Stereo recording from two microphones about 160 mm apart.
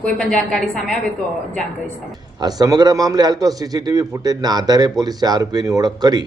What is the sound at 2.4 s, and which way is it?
Speech, 25° right (ahead or behind).